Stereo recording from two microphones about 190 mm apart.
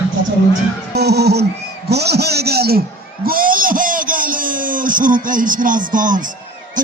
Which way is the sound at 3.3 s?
50° right (ahead or behind).